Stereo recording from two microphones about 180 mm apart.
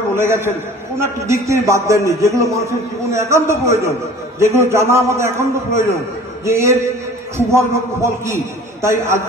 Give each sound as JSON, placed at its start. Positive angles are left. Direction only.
{"t": 0.1, "sound": "a man's voice", "side_deg": -15}